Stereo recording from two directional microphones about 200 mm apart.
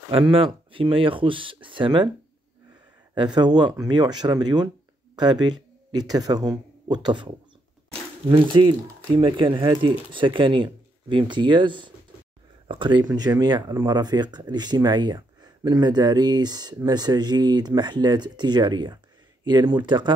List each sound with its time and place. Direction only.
0.1 s speech: 25° right (ahead or behind)
3.3 s speech: 20° right (ahead or behind)